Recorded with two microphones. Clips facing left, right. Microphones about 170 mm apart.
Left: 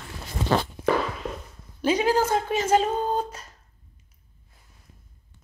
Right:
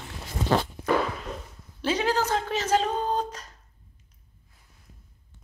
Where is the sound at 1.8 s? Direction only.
10° left (ahead or behind).